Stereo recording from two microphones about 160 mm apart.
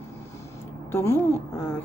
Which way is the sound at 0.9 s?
15° left (ahead or behind).